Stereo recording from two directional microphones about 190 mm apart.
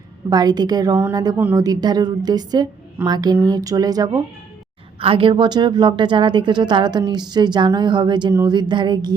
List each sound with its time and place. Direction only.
0.3 s a woman's voice: 20° right (ahead or behind)